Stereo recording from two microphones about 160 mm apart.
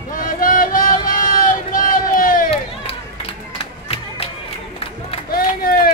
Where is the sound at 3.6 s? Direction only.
35° left (ahead or behind).